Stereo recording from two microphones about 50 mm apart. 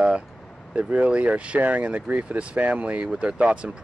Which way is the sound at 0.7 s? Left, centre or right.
Right.